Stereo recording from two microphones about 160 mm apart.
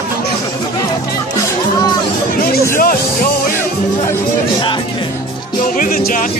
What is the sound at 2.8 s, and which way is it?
Speech, 65° left (ahead or behind).